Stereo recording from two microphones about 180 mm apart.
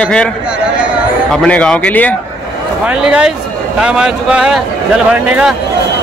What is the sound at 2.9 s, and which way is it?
A man's voice, 5° right (ahead or behind).